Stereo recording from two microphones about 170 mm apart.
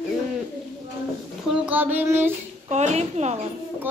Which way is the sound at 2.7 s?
40° right (ahead or behind).